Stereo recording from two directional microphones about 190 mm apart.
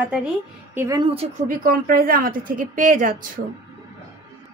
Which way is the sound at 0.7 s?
15° right (ahead or behind).